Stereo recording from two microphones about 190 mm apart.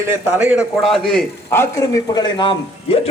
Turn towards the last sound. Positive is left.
turn(degrees=30)  # may be behind; listen again after turning